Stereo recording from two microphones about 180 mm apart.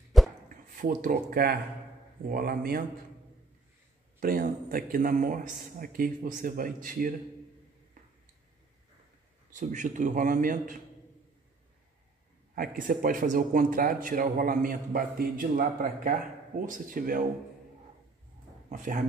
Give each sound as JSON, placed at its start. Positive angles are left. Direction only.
{"t": 0.1, "sound": "a sound", "side_deg": 0}
{"t": 0.5, "sound": "a man's voice", "side_deg": -50}
{"t": 4.2, "sound": "a man's voice", "side_deg": -55}
{"t": 9.6, "sound": "a man's voice", "side_deg": -45}
{"t": 12.5, "sound": "a man's voice", "side_deg": -50}
{"t": 18.7, "sound": "a man's voice", "side_deg": -45}